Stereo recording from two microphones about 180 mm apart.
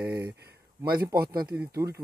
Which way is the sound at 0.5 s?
55° right (ahead or behind).